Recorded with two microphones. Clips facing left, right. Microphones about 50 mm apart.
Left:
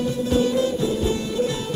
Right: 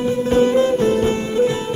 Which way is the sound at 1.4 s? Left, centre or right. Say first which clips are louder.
Right 7 dB; right.